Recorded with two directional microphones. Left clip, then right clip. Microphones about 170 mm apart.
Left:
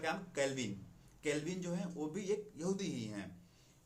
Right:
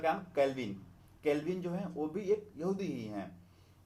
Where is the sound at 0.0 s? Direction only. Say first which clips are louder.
Right 7 dB; 30° left (ahead or behind).